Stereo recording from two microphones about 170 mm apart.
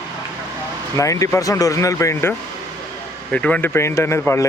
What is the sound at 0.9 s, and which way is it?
Speech, 20° left (ahead or behind).